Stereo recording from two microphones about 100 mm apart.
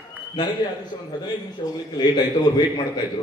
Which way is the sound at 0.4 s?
45° left (ahead or behind).